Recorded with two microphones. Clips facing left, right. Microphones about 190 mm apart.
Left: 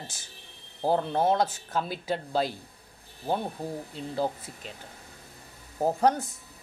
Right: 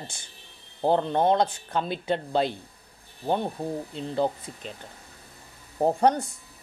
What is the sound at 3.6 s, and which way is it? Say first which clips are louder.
Speech: right 4 dB; 25° right (ahead or behind).